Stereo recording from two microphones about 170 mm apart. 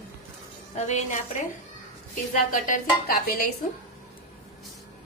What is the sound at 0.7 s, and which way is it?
Speech, 45° left (ahead or behind).